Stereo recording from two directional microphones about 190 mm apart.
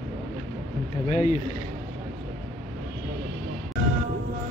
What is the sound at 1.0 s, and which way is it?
Speech, 35° left (ahead or behind).